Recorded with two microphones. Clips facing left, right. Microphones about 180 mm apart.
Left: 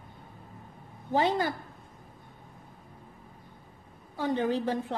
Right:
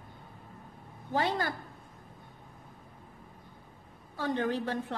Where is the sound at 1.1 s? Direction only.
15° left (ahead or behind).